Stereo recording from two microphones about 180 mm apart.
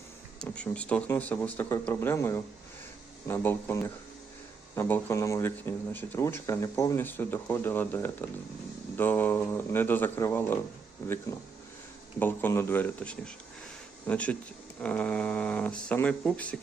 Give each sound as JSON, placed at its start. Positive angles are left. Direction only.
{"t": 0.3, "sound": "speech", "side_deg": 5}
{"t": 12.2, "sound": "speech", "side_deg": 10}